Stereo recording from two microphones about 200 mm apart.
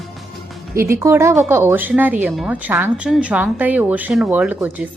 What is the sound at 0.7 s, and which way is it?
Speech, 15° right (ahead or behind).